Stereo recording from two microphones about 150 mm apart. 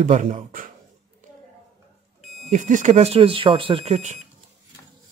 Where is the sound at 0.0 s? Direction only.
50° right (ahead or behind).